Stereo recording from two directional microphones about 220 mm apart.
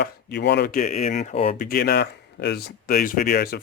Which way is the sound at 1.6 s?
45° left (ahead or behind).